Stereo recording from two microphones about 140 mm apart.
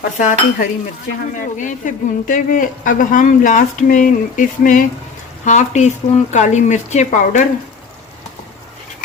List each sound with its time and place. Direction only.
0.2 s speech: 60° left (ahead or behind)
5.5 s speech: 55° left (ahead or behind)